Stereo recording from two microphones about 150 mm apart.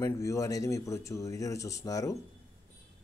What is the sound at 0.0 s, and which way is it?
Speech, 20° left (ahead or behind).